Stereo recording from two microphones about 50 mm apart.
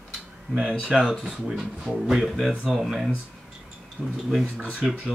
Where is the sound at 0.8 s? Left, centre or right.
Centre.